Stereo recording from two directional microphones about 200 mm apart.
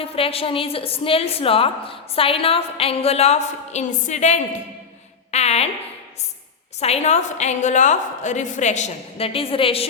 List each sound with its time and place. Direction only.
0.0 s a woman's voice: 30° left (ahead or behind)
6.7 s a woman's voice: 30° left (ahead or behind)